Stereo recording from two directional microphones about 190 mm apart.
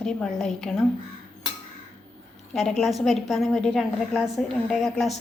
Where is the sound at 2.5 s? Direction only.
Centre (ahead or behind).